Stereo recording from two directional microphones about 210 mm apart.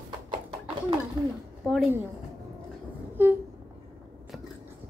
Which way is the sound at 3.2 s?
10° right (ahead or behind).